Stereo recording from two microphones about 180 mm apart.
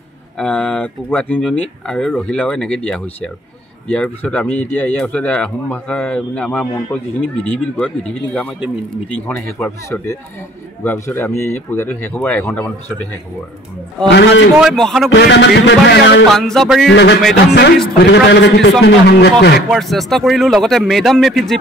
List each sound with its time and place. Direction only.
0.4 s speech: 5° left (ahead or behind)
14.0 s a man's voice: 80° left
14.6 s speech: centre (ahead or behind)
15.0 s a man's voice: 75° left (ahead or behind)
16.3 s speech: centre (ahead or behind)
16.9 s a man's voice: 70° left (ahead or behind)
19.7 s speech: centre (ahead or behind)